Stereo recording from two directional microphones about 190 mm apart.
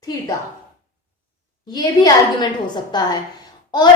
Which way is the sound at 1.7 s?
20° left (ahead or behind).